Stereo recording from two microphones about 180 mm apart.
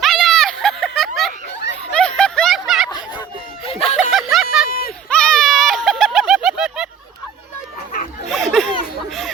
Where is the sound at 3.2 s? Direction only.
30° left (ahead or behind).